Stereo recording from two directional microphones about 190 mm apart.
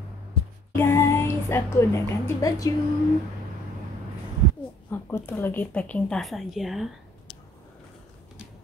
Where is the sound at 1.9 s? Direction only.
20° left (ahead or behind).